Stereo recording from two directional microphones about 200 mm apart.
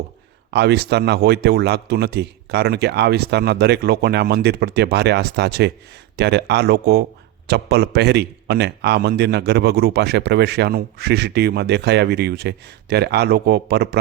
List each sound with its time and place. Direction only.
0.5 s a man's voice: 55° right (ahead or behind)